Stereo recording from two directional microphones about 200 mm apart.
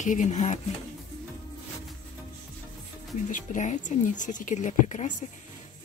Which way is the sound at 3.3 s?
40° left (ahead or behind).